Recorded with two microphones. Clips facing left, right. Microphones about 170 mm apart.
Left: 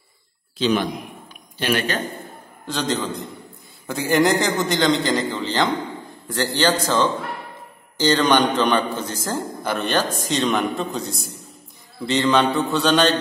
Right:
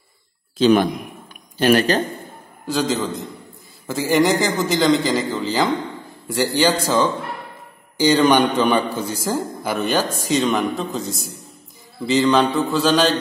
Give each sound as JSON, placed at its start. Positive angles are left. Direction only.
{"t": 0.6, "sound": "a man's voice", "side_deg": -50}
{"t": 2.6, "sound": "a man's voice", "side_deg": -5}